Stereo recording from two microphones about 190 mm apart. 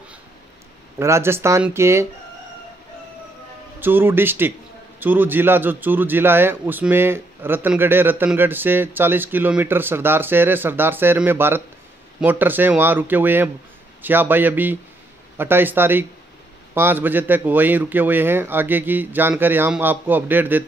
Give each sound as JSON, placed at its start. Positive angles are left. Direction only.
{"t": 0.9, "sound": "a man's voice", "side_deg": -15}
{"t": 3.8, "sound": "a man's voice", "side_deg": -10}